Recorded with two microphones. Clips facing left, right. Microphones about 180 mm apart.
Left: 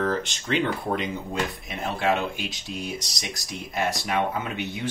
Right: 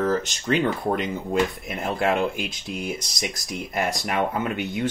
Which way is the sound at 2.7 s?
60° right (ahead or behind).